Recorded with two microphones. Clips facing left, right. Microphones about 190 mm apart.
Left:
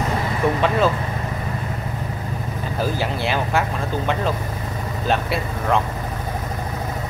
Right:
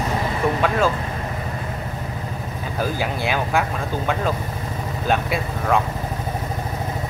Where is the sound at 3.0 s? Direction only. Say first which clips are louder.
Even; 5° right (ahead or behind).